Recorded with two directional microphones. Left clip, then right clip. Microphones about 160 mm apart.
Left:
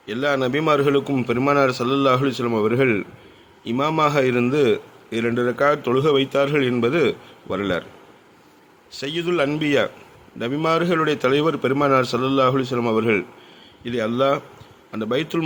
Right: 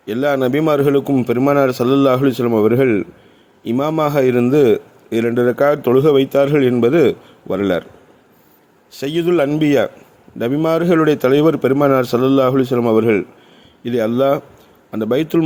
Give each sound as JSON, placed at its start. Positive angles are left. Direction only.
{"t": 0.0, "sound": "a man's voice", "side_deg": -40}
{"t": 8.9, "sound": "a man's voice", "side_deg": -40}